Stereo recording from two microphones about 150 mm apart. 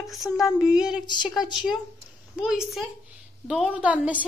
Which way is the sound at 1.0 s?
30° left (ahead or behind).